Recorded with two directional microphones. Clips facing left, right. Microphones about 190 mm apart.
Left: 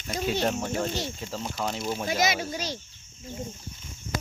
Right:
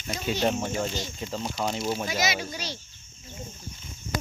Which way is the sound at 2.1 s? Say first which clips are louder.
Left 2 dB; 50° left (ahead or behind).